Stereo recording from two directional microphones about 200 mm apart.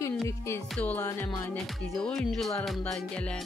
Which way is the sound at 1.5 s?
Centre (ahead or behind).